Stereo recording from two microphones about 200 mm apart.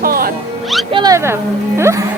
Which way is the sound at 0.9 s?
20° right (ahead or behind).